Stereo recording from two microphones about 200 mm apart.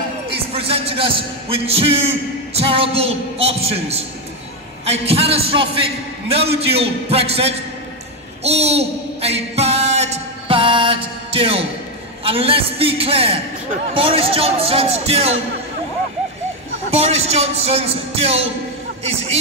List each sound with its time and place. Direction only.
0.5 s speech: 30° right (ahead or behind)
8.5 s music: 30° right (ahead or behind)
12.2 s speech: 30° right (ahead or behind)
17.0 s music: 30° right (ahead or behind)